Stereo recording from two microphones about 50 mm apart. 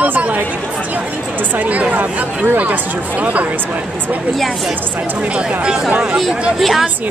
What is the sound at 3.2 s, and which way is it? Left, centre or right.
Speech, right.